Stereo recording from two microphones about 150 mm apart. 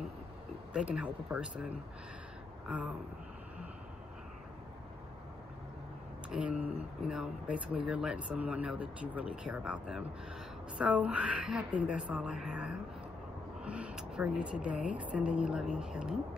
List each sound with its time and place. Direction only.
0.7 s speech: 5° right (ahead or behind)
2.7 s speech: 10° right (ahead or behind)
6.3 s speech: 5° right (ahead or behind)